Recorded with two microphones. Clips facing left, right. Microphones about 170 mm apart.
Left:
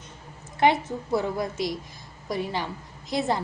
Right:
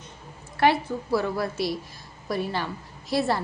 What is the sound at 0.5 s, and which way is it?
A woman's voice, 20° left (ahead or behind).